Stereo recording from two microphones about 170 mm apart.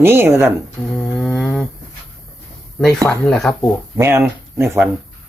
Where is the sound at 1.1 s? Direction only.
5° left (ahead or behind).